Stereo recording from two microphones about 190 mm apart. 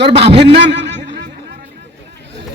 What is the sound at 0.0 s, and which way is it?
Speech, 65° right (ahead or behind).